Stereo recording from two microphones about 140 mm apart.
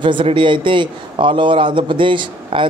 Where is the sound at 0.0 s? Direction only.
35° right (ahead or behind).